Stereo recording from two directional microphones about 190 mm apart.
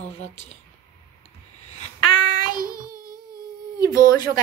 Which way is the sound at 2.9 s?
50° right (ahead or behind).